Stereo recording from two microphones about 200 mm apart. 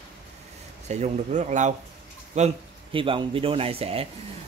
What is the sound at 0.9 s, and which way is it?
Speech, 35° right (ahead or behind).